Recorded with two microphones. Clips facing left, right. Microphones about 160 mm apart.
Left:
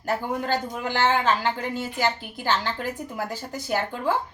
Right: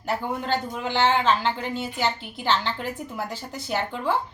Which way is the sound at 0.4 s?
10° left (ahead or behind).